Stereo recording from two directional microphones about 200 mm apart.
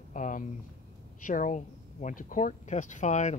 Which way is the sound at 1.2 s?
40° left (ahead or behind).